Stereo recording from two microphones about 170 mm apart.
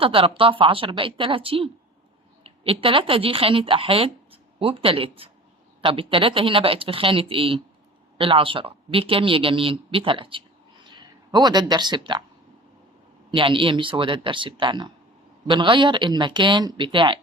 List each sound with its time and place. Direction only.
0.0 s speech: 30° right (ahead or behind)
13.3 s speech: 30° right (ahead or behind)